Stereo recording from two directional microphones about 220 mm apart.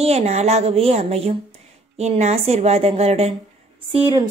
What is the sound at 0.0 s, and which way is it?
Speech, 30° right (ahead or behind).